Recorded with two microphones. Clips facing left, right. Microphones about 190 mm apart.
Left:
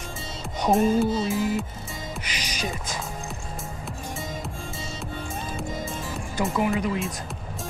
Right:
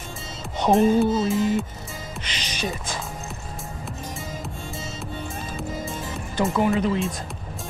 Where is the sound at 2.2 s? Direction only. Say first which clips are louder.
Even; 30° right (ahead or behind).